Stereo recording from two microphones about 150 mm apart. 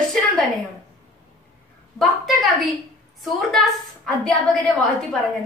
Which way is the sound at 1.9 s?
Centre (ahead or behind).